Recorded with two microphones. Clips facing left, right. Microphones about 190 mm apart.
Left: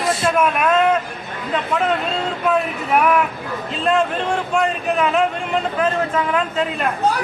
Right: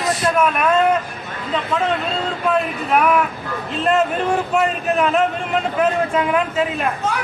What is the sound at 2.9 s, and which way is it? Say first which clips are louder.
A man's voice: even; centre (ahead or behind).